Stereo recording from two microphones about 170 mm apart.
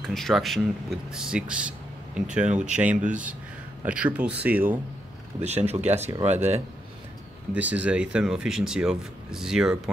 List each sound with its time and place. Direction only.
0.0 s speech: centre (ahead or behind)
2.5 s speech: 45° right (ahead or behind)
2.8 s speech: 10° right (ahead or behind)
5.7 s speech: 40° right (ahead or behind)
7.5 s speech: 10° right (ahead or behind)